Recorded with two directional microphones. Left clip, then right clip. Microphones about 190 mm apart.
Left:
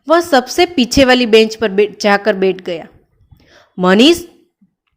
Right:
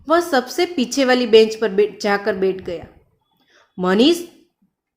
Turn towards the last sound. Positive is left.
turn(degrees=40)  # may be behind; listen again after turning